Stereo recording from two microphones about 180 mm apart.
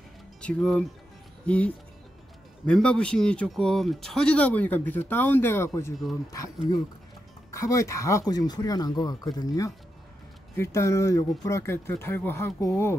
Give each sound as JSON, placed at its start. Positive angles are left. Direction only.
{"t": 0.4, "sound": "speech", "side_deg": 5}